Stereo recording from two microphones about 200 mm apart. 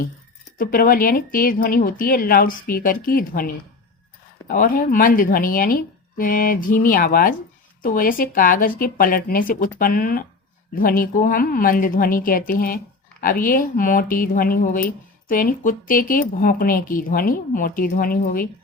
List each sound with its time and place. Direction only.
0.6 s speech: 45° left (ahead or behind)